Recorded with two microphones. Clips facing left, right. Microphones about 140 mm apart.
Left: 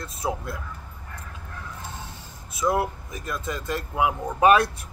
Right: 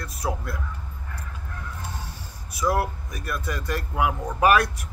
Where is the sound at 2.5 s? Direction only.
20° left (ahead or behind).